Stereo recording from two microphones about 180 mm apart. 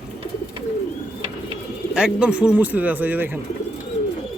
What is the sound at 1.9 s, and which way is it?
Speech, 5° right (ahead or behind).